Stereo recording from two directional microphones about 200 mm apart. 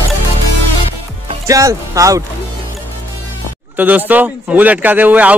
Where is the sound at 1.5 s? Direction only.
15° right (ahead or behind).